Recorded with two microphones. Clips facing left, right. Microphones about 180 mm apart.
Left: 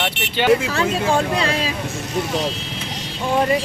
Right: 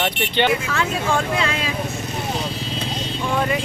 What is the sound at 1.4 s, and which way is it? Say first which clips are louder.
Speech: left 2 dB; 35° left (ahead or behind).